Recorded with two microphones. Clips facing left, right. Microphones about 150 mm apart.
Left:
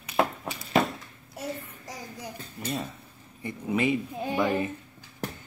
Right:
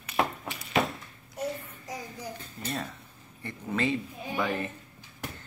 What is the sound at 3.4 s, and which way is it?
Speech, 15° left (ahead or behind).